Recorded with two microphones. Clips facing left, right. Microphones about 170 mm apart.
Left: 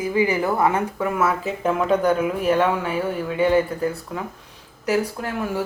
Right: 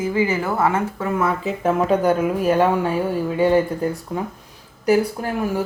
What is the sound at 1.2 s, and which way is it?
Speech, 5° left (ahead or behind).